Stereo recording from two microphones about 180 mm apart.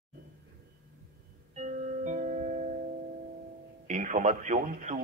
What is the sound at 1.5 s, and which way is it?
Music, 40° right (ahead or behind).